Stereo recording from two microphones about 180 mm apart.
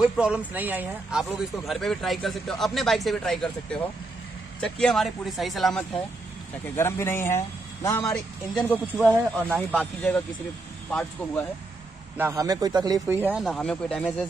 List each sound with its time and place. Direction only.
0.0 s speech: 5° right (ahead or behind)
1.7 s speech: centre (ahead or behind)
6.6 s speech: 15° left (ahead or behind)
8.0 s speech: 5° left (ahead or behind)
12.2 s speech: 15° right (ahead or behind)
13.2 s speech: 5° right (ahead or behind)